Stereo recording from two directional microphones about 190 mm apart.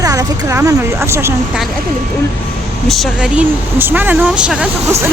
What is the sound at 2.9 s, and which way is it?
Speech, centre (ahead or behind).